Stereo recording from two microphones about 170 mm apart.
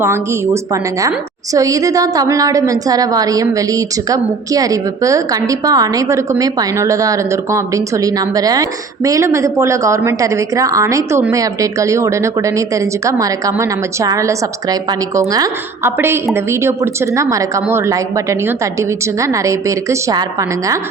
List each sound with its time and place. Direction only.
0.0 s a woman's voice: 15° right (ahead or behind)